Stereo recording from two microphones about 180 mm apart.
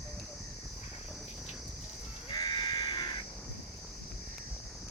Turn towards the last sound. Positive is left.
turn(degrees=25)  # may be behind; listen again after turning